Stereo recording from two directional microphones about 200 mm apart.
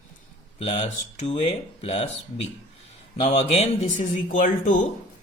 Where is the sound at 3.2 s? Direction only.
30° left (ahead or behind).